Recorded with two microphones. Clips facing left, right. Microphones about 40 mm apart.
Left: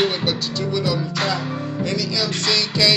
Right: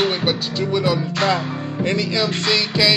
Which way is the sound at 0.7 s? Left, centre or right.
Right.